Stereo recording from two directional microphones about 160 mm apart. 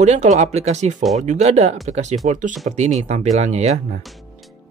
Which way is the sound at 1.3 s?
45° right (ahead or behind).